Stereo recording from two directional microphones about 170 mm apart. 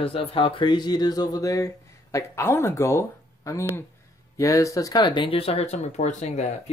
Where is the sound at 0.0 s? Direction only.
30° left (ahead or behind).